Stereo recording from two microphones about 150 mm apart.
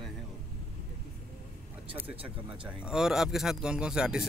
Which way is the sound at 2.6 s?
5° right (ahead or behind).